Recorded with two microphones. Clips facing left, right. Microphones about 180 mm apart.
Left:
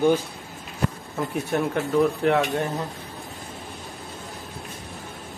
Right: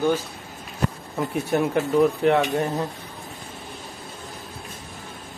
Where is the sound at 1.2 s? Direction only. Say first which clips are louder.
Right 2 dB; centre (ahead or behind).